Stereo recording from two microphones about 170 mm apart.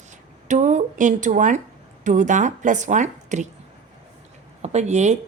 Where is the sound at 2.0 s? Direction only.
45° right (ahead or behind).